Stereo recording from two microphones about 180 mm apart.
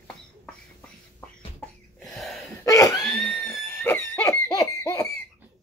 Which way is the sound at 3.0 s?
Centre (ahead or behind).